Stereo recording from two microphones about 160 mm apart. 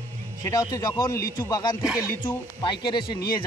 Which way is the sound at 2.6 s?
30° left (ahead or behind).